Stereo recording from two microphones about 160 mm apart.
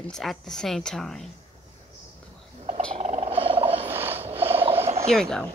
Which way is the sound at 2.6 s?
40° right (ahead or behind).